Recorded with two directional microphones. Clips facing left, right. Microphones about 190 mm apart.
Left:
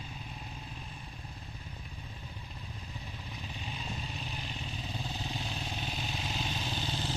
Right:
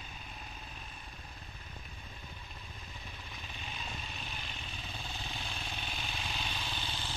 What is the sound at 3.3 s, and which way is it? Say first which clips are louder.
Vehicle: left 5 dB; 35° left (ahead or behind).